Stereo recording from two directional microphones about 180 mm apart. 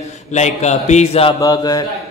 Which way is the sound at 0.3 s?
40° left (ahead or behind).